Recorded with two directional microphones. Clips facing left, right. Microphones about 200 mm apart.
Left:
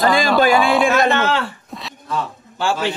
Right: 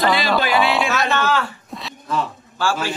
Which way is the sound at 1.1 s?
25° left (ahead or behind).